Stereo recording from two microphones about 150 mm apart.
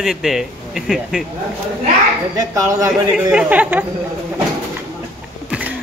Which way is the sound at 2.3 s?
20° right (ahead or behind).